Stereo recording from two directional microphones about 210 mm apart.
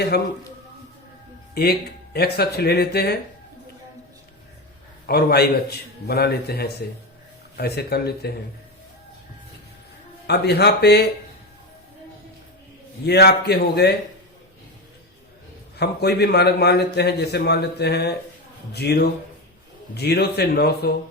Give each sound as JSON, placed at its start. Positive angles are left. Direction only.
{"t": 0.1, "sound": "a man's voice", "side_deg": 50}
{"t": 1.6, "sound": "a man's voice", "side_deg": 50}
{"t": 5.0, "sound": "a man's voice", "side_deg": 50}
{"t": 10.2, "sound": "a man's voice", "side_deg": 50}
{"t": 13.1, "sound": "a man's voice", "side_deg": 50}
{"t": 15.8, "sound": "a man's voice", "side_deg": 50}